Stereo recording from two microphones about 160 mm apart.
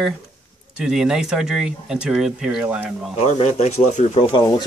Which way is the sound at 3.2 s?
40° left (ahead or behind).